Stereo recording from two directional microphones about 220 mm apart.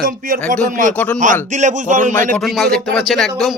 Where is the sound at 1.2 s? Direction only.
35° right (ahead or behind).